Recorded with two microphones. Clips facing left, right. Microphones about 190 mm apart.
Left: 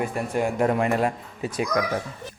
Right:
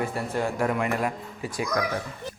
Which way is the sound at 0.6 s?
30° left (ahead or behind).